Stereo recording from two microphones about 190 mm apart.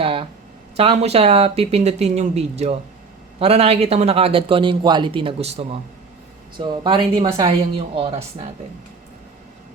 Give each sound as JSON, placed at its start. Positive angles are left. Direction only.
{"t": 0.0, "sound": "a man's voice", "side_deg": -30}